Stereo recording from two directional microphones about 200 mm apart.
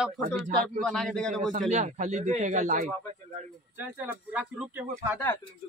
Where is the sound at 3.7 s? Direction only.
10° right (ahead or behind).